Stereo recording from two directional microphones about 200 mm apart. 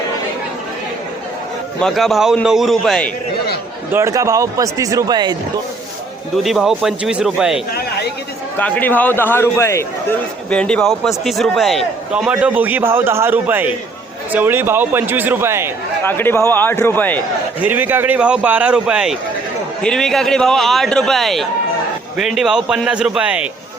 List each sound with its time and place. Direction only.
1.8 s a man's voice: centre (ahead or behind)
3.9 s a man's voice: 15° right (ahead or behind)
6.3 s a man's voice: centre (ahead or behind)
8.5 s a man's voice: 10° left (ahead or behind); by 15.7 s 10° right (ahead or behind)
16.0 s a man's voice: 10° left (ahead or behind)
17.6 s a man's voice: 10° right (ahead or behind)